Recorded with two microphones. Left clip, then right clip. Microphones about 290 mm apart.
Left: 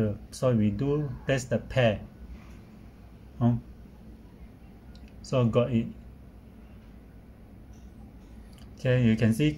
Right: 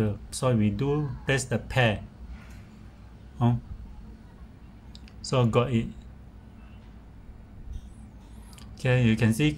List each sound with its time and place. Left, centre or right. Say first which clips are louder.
0.0 s speech: even; centre
5.2 s speech: right 1 dB; centre
8.7 s speech: even; centre